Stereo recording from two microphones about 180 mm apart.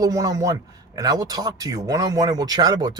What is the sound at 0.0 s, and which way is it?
Speech, 20° right (ahead or behind).